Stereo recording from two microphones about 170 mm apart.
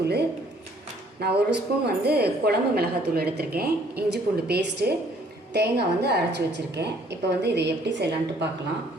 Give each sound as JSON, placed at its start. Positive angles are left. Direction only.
{"t": 1.2, "sound": "a woman's voice", "side_deg": -70}